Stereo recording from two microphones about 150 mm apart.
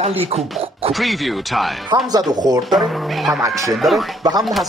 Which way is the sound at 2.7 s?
Centre (ahead or behind).